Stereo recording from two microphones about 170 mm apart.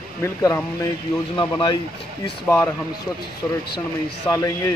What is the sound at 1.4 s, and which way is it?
Speech, 25° left (ahead or behind).